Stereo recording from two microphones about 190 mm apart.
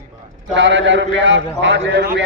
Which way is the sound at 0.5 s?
85° right.